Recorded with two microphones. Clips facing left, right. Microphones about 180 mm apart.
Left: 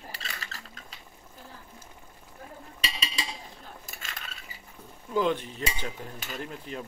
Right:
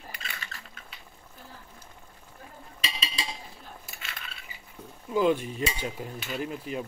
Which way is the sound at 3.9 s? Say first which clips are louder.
Even; 40° left (ahead or behind).